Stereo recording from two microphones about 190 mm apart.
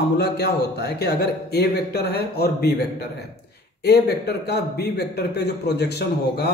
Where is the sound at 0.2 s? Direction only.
60° left (ahead or behind).